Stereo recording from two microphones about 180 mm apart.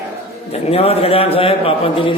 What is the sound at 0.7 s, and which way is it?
A man's voice, 35° left (ahead or behind).